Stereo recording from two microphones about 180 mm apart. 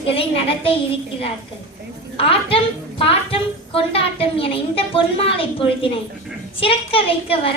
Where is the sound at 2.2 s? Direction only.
30° left (ahead or behind).